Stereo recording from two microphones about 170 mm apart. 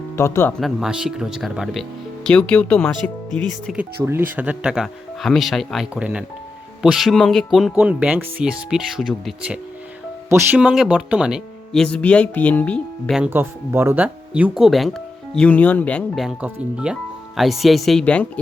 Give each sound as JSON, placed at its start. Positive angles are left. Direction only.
{"t": 0.2, "sound": "speech", "side_deg": 15}
{"t": 0.6, "sound": "speech", "side_deg": -5}
{"t": 4.0, "sound": "speech", "side_deg": -10}
{"t": 10.2, "sound": "speech", "side_deg": -10}
{"t": 13.1, "sound": "speech", "side_deg": -10}